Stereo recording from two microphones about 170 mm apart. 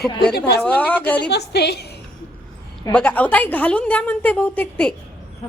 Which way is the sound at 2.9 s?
10° left (ahead or behind).